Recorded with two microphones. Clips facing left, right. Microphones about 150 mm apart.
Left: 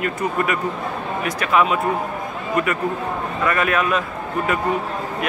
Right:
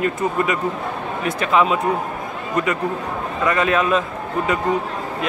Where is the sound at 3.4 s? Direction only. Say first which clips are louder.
Right 2 dB; 20° right (ahead or behind).